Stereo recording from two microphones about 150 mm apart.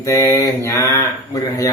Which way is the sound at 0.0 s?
20° left (ahead or behind).